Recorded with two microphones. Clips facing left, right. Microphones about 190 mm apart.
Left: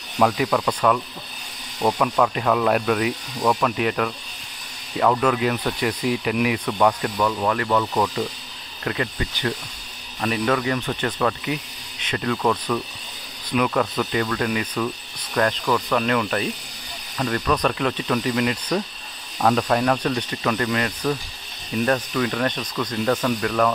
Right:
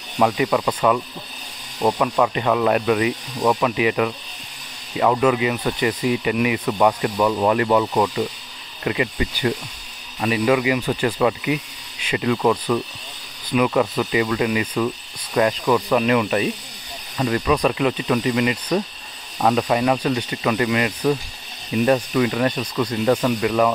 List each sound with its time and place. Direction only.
0.2 s speech: 5° right (ahead or behind)
7.3 s speech: 20° right (ahead or behind)